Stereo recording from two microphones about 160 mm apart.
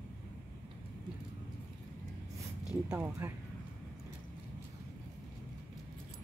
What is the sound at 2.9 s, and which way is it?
Speech, 15° right (ahead or behind).